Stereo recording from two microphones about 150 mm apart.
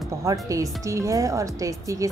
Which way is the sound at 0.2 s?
20° right (ahead or behind).